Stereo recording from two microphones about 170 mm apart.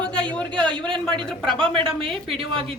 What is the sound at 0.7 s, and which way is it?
Speech, 30° right (ahead or behind).